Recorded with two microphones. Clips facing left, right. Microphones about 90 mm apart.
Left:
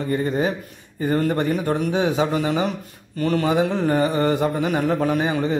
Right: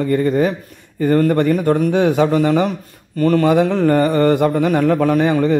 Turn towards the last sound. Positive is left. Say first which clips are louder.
# right 6 dB
turn(degrees=-50)  # may be behind; listen again after turning